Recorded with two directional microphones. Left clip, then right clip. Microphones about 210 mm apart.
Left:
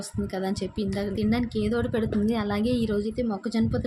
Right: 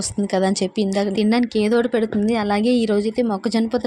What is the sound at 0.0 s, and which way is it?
A woman's voice, 35° right (ahead or behind).